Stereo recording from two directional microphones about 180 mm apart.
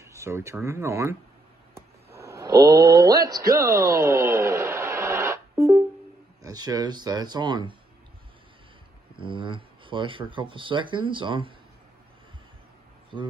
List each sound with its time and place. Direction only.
0.0 s speech: 15° right (ahead or behind)
2.1 s speech: 15° right (ahead or behind)
9.1 s speech: 25° right (ahead or behind)